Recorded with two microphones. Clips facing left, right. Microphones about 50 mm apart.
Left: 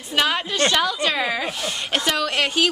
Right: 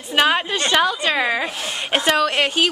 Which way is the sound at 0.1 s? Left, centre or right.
Right.